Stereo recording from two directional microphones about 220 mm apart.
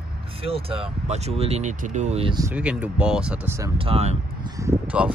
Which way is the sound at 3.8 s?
25° right (ahead or behind).